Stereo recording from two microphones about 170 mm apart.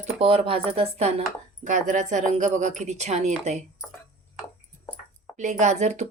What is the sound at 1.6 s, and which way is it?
A woman's voice, 45° right (ahead or behind).